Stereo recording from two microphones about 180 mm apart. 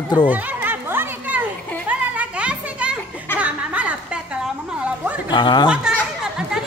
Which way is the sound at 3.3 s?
5° right (ahead or behind).